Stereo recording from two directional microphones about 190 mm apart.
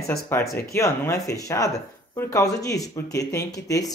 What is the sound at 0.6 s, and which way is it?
Speech, 15° left (ahead or behind).